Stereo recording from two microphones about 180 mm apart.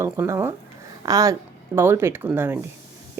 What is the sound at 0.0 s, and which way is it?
A woman's voice, 15° right (ahead or behind).